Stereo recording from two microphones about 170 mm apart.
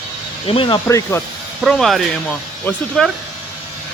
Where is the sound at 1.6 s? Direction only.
Centre (ahead or behind).